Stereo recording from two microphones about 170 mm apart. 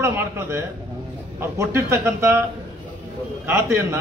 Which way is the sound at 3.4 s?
15° right (ahead or behind).